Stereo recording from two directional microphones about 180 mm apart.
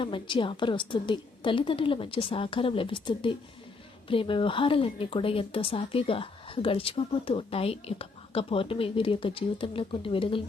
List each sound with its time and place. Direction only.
0.0 s a woman's voice: 25° left (ahead or behind)